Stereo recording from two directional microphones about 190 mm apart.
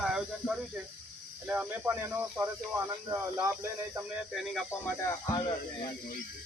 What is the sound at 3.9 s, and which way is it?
Speech, centre (ahead or behind).